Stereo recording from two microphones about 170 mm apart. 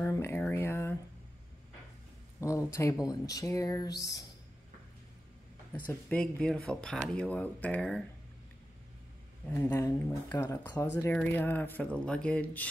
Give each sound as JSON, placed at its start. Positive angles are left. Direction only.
{"t": 0.0, "sound": "a sound", "side_deg": 15}
{"t": 2.4, "sound": "speech", "side_deg": 15}
{"t": 6.0, "sound": "speech", "side_deg": 5}
{"t": 9.5, "sound": "speech", "side_deg": 15}